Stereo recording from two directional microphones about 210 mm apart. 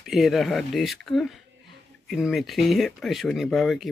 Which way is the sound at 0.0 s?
Centre (ahead or behind).